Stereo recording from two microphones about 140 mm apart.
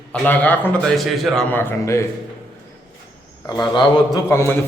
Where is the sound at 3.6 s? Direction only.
30° left (ahead or behind).